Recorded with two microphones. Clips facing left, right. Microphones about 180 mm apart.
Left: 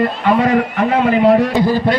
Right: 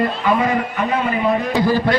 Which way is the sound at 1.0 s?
70° left (ahead or behind).